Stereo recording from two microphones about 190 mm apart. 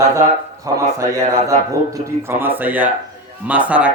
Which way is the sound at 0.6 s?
15° right (ahead or behind).